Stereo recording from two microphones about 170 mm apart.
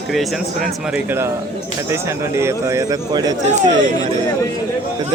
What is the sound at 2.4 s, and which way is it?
Speech, 15° right (ahead or behind).